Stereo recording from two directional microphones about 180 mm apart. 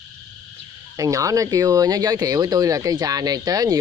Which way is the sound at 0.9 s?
20° right (ahead or behind).